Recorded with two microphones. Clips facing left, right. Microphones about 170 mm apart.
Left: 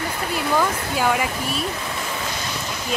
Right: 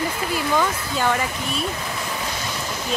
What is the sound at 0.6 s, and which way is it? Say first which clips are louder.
Speech: left 1 dB; 10° left (ahead or behind).